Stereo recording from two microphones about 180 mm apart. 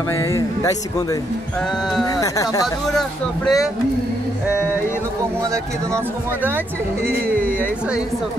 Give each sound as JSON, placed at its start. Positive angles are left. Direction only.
{"t": 0.1, "sound": "speech", "side_deg": 15}
{"t": 2.0, "sound": "speech", "side_deg": 20}
{"t": 2.9, "sound": "speech", "side_deg": 0}